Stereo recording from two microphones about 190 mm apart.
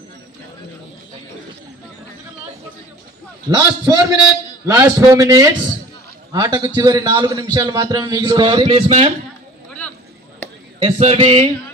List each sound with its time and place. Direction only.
3.4 s a man's voice: 20° right (ahead or behind)
10.8 s speech: 30° right (ahead or behind)